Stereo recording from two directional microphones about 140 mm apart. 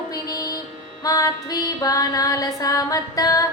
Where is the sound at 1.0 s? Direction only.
25° left (ahead or behind).